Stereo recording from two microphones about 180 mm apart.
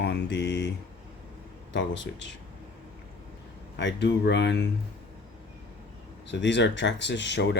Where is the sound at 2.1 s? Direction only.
80° left.